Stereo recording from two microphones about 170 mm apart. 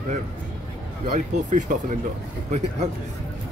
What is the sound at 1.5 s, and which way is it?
Speech, 50° right (ahead or behind).